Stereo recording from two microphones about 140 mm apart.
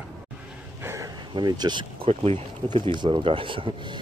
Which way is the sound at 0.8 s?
20° right (ahead or behind).